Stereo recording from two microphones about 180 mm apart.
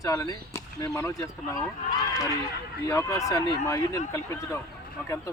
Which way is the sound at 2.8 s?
15° left (ahead or behind).